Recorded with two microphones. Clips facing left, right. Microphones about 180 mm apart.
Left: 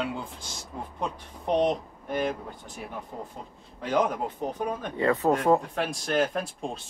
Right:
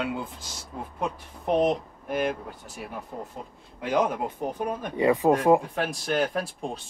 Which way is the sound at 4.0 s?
10° right (ahead or behind).